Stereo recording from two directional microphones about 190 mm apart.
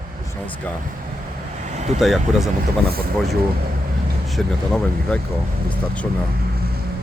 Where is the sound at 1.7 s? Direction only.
40° right (ahead or behind).